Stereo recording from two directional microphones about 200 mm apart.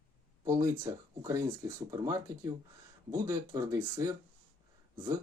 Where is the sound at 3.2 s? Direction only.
15° right (ahead or behind).